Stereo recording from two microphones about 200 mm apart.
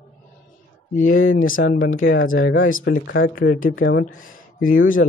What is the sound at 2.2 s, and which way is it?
Speech, 80° left.